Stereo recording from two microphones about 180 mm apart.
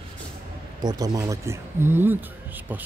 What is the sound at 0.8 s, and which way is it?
Speech, 20° right (ahead or behind).